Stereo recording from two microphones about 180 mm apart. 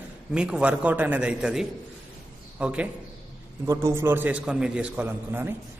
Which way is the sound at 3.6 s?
15° right (ahead or behind).